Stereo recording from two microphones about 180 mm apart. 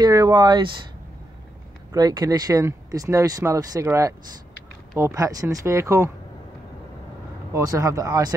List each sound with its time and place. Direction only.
0.0 s speech: 20° right (ahead or behind)
1.9 s speech: 20° right (ahead or behind)
7.5 s speech: 20° right (ahead or behind)